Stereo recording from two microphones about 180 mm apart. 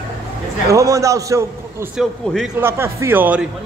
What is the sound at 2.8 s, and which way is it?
Speech, 15° right (ahead or behind).